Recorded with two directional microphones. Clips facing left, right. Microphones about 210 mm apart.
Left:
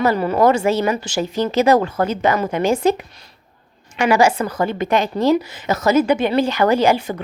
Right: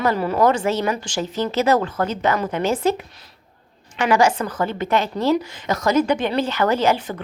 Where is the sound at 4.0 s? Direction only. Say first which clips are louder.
Left 2 dB; 10° left (ahead or behind).